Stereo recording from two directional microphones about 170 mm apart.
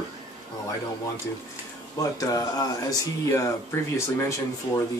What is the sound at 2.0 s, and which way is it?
Speech, 20° left (ahead or behind).